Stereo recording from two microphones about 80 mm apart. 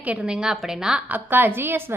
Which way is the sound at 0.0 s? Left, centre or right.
Centre.